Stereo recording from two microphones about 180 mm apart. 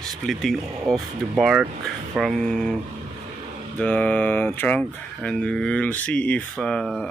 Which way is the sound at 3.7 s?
10° left (ahead or behind).